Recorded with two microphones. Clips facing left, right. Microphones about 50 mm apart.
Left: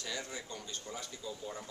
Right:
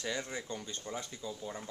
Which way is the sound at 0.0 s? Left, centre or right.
Right.